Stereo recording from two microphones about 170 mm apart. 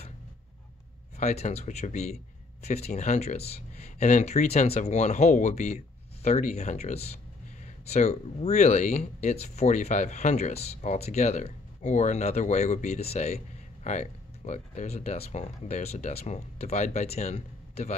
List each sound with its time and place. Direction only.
1.1 s speech: 40° left (ahead or behind)